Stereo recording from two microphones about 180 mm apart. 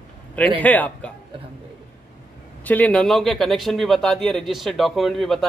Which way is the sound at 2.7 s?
10° left (ahead or behind).